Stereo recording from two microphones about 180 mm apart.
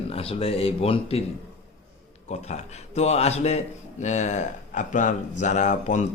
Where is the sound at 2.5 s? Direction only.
40° left (ahead or behind).